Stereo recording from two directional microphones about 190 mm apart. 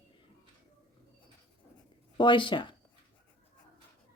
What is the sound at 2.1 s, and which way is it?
Speech, 25° left (ahead or behind).